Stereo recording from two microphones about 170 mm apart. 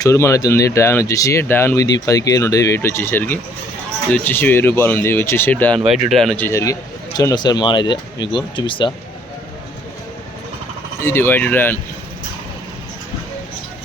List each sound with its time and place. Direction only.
0.0 s a man's voice: 15° left (ahead or behind)
11.0 s speech: 15° left (ahead or behind)